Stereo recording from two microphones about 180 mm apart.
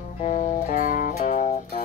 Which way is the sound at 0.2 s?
45° left (ahead or behind).